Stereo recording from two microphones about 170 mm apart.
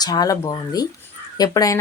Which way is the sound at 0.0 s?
25° left (ahead or behind).